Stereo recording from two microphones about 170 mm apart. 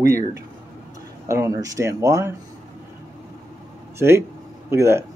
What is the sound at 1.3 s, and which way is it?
Speech, 20° right (ahead or behind).